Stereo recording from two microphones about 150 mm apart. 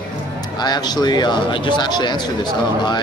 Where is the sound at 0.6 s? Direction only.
30° left (ahead or behind).